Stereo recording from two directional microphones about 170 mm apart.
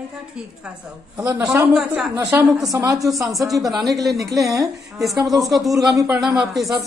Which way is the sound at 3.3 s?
Centre (ahead or behind).